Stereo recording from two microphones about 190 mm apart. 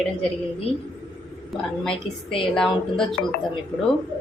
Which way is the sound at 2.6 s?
5° left (ahead or behind).